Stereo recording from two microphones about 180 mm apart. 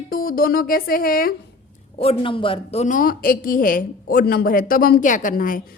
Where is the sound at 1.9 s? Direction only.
30° left (ahead or behind); by 5.6 s 50° left (ahead or behind).